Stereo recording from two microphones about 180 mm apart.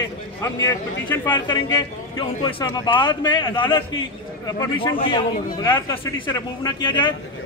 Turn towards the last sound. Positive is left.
turn(degrees=25)  # may be behind; listen again after turning